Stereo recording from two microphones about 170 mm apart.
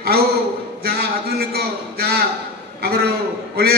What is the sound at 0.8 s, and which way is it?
A man's voice, 65° right (ahead or behind).